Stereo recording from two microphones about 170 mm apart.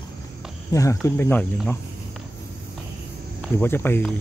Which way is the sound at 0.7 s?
20° left (ahead or behind).